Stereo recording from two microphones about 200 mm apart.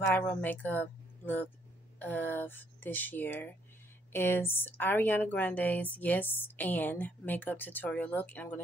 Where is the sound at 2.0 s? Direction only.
10° left (ahead or behind).